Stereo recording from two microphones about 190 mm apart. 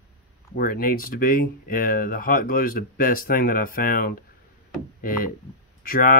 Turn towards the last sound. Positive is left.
turn(degrees=45)  # may be behind; listen again after turning